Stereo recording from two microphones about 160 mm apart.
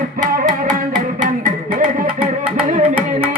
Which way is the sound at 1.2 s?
55° right (ahead or behind).